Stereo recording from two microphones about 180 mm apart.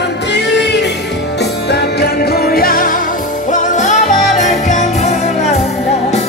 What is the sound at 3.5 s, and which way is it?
Music, 45° left (ahead or behind).